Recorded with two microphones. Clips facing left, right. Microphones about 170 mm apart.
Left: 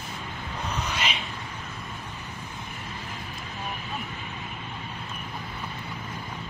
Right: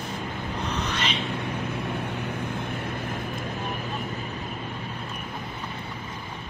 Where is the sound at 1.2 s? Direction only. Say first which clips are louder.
Right 9 dB; 65° right (ahead or behind); by 4.4 s 40° right (ahead or behind).